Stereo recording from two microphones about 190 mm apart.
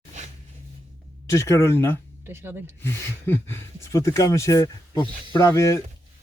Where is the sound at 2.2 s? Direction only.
10° right (ahead or behind).